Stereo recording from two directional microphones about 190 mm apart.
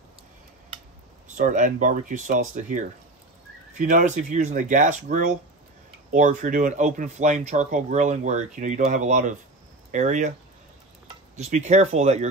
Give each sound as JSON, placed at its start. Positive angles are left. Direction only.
{"t": 1.3, "sound": "speech", "side_deg": -40}
{"t": 11.3, "sound": "speech", "side_deg": -35}